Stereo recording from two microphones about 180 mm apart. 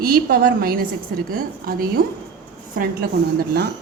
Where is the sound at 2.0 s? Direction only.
50° right (ahead or behind).